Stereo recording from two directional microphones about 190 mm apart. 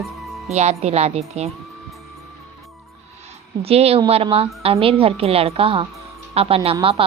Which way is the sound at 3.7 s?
30° right (ahead or behind).